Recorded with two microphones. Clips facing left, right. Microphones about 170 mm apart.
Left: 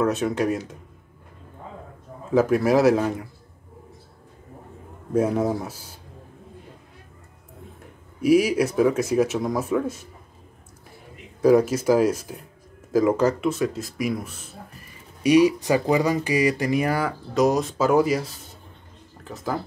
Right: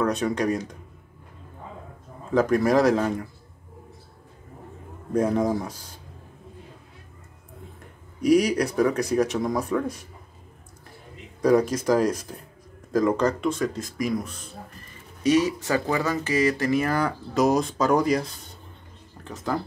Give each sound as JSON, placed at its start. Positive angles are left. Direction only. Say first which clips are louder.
{"t": 0.0, "sound": "speech", "louder": "left 2 dB", "side_deg": 5}
{"t": 2.3, "sound": "speech", "louder": "left 1 dB", "side_deg": 5}
{"t": 5.1, "sound": "speech", "louder": "left 1 dB", "side_deg": 5}
{"t": 8.2, "sound": "speech", "louder": "left 1 dB", "side_deg": 5}
{"t": 11.4, "sound": "speech", "louder": "left 3 dB", "side_deg": 5}
{"t": 17.3, "sound": "speech", "louder": "left 1 dB", "side_deg": 0}